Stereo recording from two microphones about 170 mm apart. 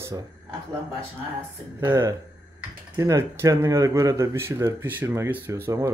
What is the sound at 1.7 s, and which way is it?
Speech, 15° right (ahead or behind).